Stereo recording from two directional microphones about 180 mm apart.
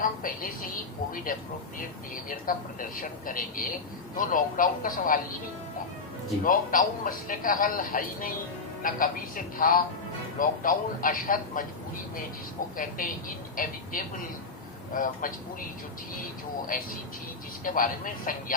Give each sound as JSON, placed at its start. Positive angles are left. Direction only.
{"t": 0.0, "sound": "a man's voice", "side_deg": 50}
{"t": 2.5, "sound": "a man's voice", "side_deg": 50}
{"t": 6.4, "sound": "a man's voice", "side_deg": 50}
{"t": 12.7, "sound": "a man's voice", "side_deg": 50}
{"t": 14.9, "sound": "a man's voice", "side_deg": 50}
{"t": 16.7, "sound": "a man's voice", "side_deg": 50}